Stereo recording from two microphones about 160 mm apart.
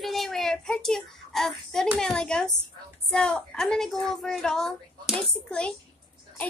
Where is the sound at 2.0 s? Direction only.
5° left (ahead or behind).